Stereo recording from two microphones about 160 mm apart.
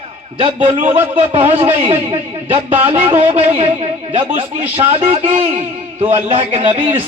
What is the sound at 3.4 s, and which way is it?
A man's voice, 50° right (ahead or behind).